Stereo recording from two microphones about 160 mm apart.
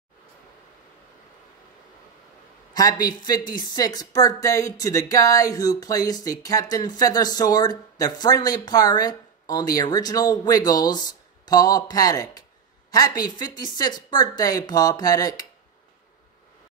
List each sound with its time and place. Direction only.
2.7 s a man's voice: 25° left (ahead or behind)